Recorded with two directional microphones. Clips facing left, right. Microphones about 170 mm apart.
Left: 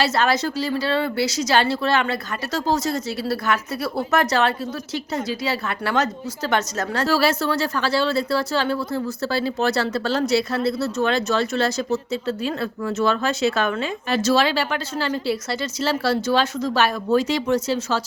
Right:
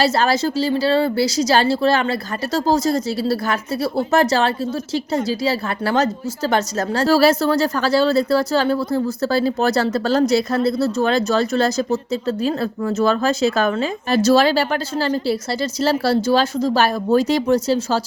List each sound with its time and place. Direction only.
0.0 s speech: 35° right (ahead or behind)